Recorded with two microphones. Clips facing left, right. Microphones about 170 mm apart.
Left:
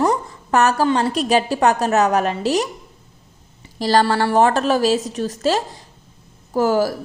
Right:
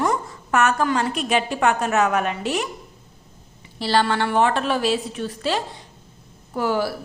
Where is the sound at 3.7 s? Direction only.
40° left (ahead or behind).